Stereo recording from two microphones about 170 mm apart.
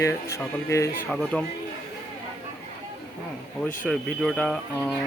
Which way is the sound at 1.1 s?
Centre (ahead or behind).